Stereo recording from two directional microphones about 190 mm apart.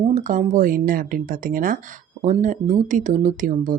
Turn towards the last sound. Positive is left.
turn(degrees=-40)  # may be behind; listen again after turning